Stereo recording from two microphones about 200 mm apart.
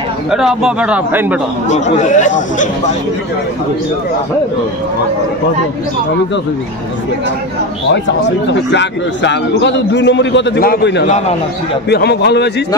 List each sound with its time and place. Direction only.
0.3 s a man's voice: 5° right (ahead or behind)
1.7 s speech: 35° left (ahead or behind)
8.5 s a man's voice: 60° left (ahead or behind)